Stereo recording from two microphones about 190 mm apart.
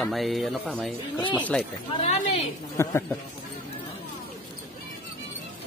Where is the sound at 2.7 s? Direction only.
15° left (ahead or behind).